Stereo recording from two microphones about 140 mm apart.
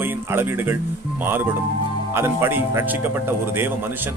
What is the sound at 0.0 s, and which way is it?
Speech, 15° right (ahead or behind).